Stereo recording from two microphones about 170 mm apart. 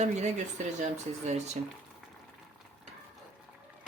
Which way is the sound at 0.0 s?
45° right (ahead or behind).